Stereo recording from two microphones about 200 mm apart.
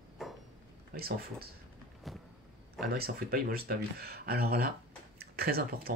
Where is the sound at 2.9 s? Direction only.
50° right (ahead or behind).